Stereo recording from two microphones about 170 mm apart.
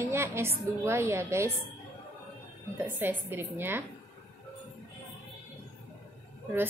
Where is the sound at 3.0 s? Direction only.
10° right (ahead or behind).